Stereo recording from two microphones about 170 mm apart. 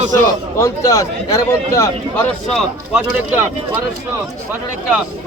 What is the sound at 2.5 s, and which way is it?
Speech, 5° right (ahead or behind).